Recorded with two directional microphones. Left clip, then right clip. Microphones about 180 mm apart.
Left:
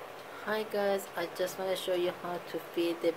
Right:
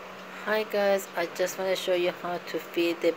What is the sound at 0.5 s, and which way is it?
Speech, 15° right (ahead or behind).